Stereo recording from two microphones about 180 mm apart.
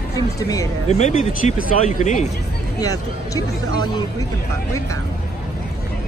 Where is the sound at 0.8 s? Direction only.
40° left (ahead or behind).